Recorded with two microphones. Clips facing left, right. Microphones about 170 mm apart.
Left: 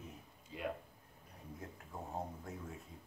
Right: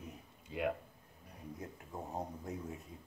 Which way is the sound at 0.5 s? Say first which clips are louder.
Right 7 dB; 65° right (ahead or behind).